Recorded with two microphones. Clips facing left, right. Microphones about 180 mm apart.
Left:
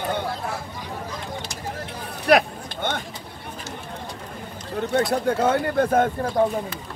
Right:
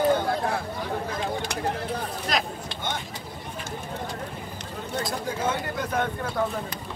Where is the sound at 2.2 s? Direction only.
65° left (ahead or behind).